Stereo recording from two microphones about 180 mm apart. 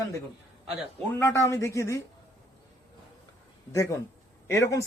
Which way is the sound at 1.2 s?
15° left (ahead or behind).